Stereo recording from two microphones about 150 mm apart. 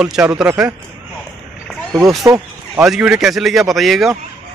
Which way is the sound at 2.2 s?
20° right (ahead or behind).